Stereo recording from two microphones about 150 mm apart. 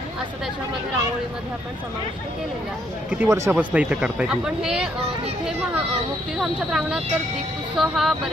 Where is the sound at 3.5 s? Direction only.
10° right (ahead or behind).